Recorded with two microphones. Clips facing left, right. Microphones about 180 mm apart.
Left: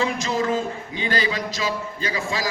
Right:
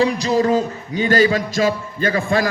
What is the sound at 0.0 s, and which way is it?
Music, 35° right (ahead or behind).